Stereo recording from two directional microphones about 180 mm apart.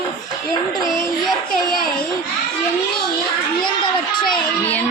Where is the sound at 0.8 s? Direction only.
Centre (ahead or behind).